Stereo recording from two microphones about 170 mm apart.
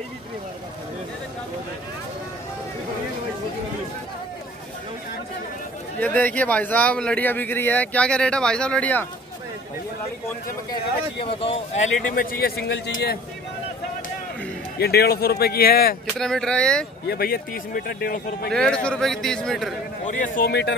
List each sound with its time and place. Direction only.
5.9 s a man's voice: 10° left (ahead or behind)
10.7 s speech: 30° left (ahead or behind)
12.2 s speech: 60° left (ahead or behind)
14.8 s speech: 70° left (ahead or behind)
16.2 s speech: 5° left (ahead or behind)
17.1 s speech: 60° left (ahead or behind)
18.5 s speech: 5° left (ahead or behind)
20.1 s speech: 50° left (ahead or behind)
20.4 s speech: 90° left